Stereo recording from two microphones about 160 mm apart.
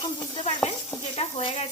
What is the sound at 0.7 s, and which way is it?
Speech, 35° left (ahead or behind).